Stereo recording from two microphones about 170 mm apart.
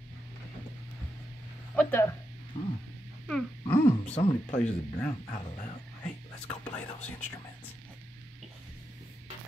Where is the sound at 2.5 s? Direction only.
40° left (ahead or behind).